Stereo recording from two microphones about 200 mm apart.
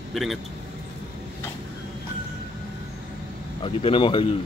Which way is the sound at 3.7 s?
25° left (ahead or behind).